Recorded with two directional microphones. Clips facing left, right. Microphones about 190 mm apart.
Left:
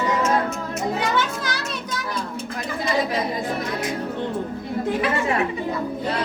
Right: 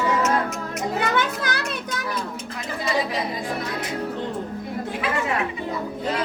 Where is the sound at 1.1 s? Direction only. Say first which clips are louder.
Even; 60° right (ahead or behind).